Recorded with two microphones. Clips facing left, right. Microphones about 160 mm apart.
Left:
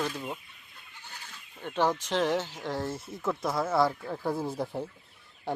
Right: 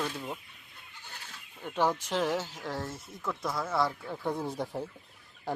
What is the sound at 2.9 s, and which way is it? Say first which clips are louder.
Speech: left 5 dB; 25° left (ahead or behind).